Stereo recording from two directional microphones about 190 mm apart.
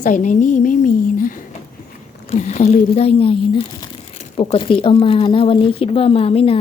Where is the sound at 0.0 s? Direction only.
40° left (ahead or behind).